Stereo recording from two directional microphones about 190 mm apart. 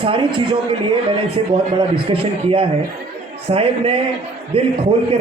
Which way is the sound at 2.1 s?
30° right (ahead or behind).